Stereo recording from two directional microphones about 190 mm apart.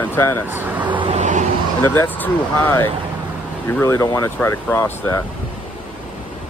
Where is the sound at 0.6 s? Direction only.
10° right (ahead or behind).